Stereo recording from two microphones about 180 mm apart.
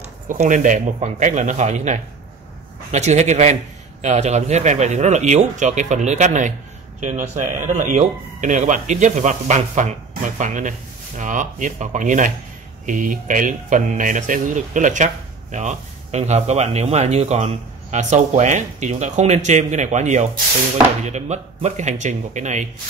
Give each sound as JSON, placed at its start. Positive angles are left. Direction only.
{"t": 0.0, "sound": "speech", "side_deg": -40}